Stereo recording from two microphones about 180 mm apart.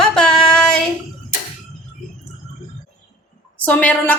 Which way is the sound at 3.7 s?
10° left (ahead or behind).